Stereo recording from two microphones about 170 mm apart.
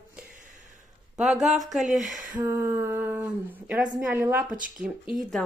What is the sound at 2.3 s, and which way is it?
Speech, 20° right (ahead or behind).